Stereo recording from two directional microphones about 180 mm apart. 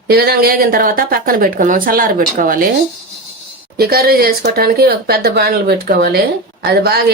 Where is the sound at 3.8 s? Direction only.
60° right (ahead or behind).